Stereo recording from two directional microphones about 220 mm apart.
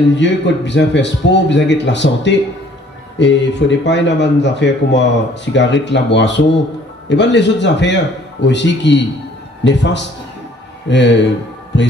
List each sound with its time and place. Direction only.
0.1 s speech: 55° left (ahead or behind)